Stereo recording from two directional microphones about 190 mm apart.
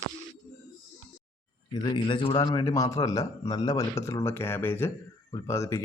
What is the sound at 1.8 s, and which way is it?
A man's voice, 25° left (ahead or behind).